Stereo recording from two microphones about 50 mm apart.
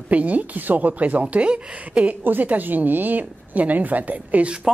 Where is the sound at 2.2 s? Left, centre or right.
Right.